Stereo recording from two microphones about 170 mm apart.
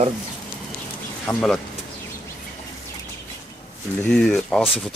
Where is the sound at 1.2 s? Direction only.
5° left (ahead or behind).